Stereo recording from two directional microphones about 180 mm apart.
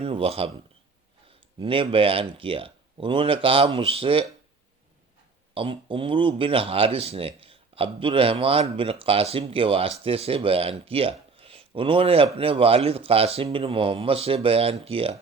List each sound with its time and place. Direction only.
0.0 s speech: 30° right (ahead or behind)
1.5 s speech: 30° right (ahead or behind)
5.5 s speech: 30° right (ahead or behind)